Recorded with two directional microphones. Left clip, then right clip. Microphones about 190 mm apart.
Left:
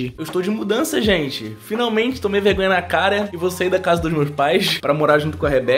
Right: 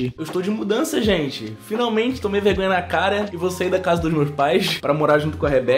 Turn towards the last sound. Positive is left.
turn(degrees=0)  # may be behind; listen again after turning